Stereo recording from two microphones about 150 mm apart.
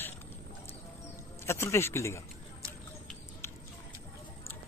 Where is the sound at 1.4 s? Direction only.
20° left (ahead or behind).